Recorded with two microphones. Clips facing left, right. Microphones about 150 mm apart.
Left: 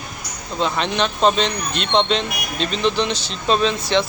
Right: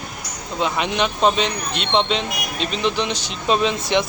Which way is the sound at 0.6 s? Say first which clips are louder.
Even; 10° right (ahead or behind).